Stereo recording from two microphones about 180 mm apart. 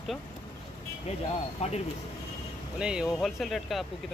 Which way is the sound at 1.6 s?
35° left (ahead or behind).